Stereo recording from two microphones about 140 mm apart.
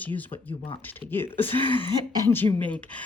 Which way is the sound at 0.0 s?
10° left (ahead or behind).